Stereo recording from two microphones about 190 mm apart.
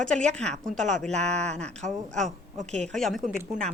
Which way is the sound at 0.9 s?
5° left (ahead or behind).